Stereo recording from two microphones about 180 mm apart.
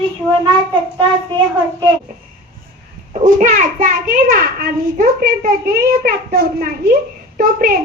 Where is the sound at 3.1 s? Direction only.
45° right (ahead or behind).